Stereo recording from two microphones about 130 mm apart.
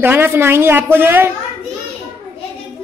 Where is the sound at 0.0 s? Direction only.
15° right (ahead or behind).